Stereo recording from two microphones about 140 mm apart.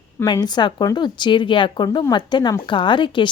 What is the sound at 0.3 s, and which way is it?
Speech, 30° left (ahead or behind).